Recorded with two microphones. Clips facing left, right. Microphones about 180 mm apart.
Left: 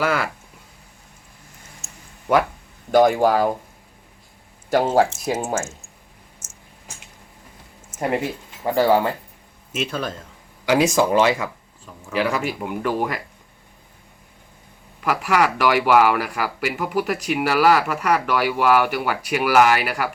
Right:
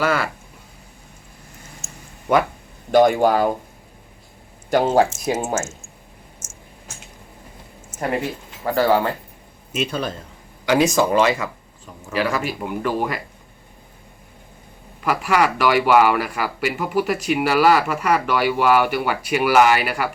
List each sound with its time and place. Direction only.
0.0 s speech: 10° left (ahead or behind)
2.9 s speech: 5° left (ahead or behind)
4.7 s speech: 5° left (ahead or behind)
6.4 s a sound: 60° left (ahead or behind)
8.6 s speech: 15° left (ahead or behind)
15.0 s speech: centre (ahead or behind)